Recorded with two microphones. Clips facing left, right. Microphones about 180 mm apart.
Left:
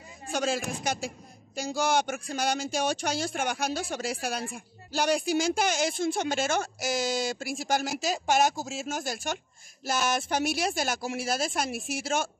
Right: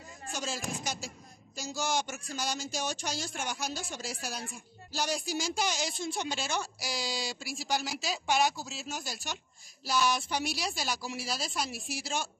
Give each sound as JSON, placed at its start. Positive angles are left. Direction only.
{"t": 0.3, "sound": "a man's voice", "side_deg": 60}